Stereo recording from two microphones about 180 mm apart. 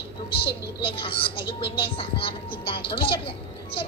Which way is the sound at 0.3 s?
30° left (ahead or behind).